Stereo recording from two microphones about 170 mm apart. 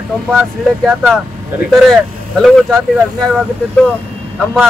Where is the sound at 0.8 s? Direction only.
5° right (ahead or behind).